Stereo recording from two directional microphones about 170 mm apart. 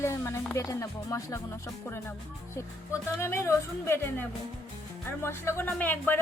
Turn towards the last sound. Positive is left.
turn(degrees=10)  # may be behind; listen again after turning